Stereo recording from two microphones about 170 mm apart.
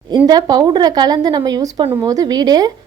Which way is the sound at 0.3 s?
25° right (ahead or behind).